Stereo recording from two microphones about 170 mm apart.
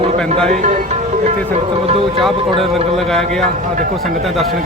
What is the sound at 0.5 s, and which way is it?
Speech, 45° right (ahead or behind).